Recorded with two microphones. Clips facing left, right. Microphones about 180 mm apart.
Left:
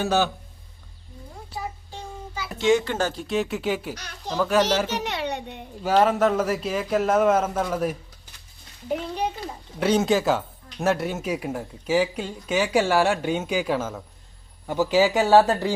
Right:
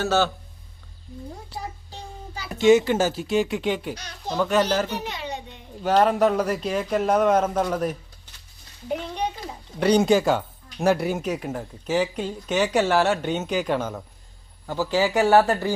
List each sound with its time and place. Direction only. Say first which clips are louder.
0.0 s speech: right 1 dB; 15° left (ahead or behind)
2.6 s speech: right 4 dB; 5° right (ahead or behind)
4.9 s a sound: left 3 dB; 75° left (ahead or behind)
5.8 s speech: right 1 dB; 5° left (ahead or behind)
8.9 s a sound: left 1 dB; 5° left (ahead or behind)
9.7 s speech: right 2 dB; centre (ahead or behind)
14.7 s speech: left 3 dB; 15° left (ahead or behind)